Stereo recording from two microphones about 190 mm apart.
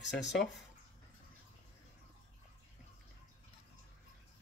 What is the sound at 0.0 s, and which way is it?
Speech, 65° left (ahead or behind).